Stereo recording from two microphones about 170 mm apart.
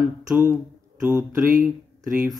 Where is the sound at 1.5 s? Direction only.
55° right (ahead or behind).